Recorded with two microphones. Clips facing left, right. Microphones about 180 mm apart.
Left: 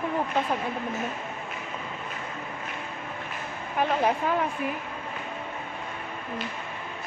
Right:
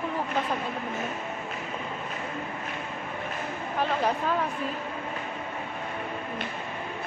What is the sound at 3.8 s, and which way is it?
Speech, 15° left (ahead or behind).